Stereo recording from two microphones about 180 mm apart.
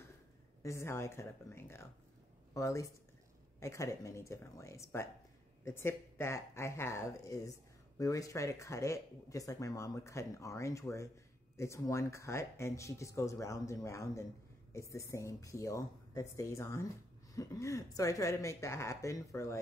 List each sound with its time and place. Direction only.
0.6 s speech: 15° left (ahead or behind)